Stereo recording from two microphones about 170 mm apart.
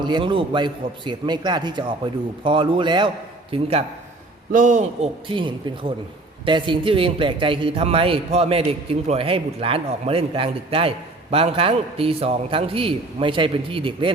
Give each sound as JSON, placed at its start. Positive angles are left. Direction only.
{"t": 0.0, "sound": "a man's voice", "side_deg": -25}
{"t": 4.5, "sound": "a man's voice", "side_deg": -45}